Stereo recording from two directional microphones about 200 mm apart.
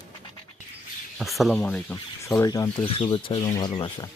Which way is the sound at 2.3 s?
15° left (ahead or behind).